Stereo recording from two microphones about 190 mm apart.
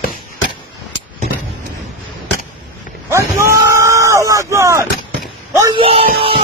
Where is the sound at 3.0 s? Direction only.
15° right (ahead or behind); by 6.4 s 30° right (ahead or behind).